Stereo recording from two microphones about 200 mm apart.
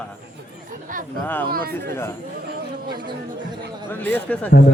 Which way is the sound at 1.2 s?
10° left (ahead or behind).